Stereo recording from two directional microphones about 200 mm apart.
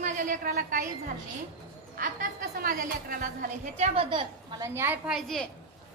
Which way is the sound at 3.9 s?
25° right (ahead or behind).